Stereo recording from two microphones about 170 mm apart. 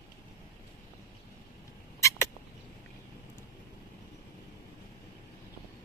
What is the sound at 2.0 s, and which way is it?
Rodents, 15° left (ahead or behind).